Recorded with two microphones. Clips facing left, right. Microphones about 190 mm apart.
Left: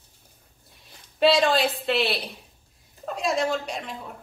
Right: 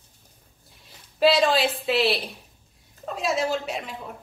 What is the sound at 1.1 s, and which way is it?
A woman's voice, centre (ahead or behind).